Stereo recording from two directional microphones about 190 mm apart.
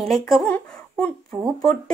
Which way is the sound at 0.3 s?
Centre (ahead or behind).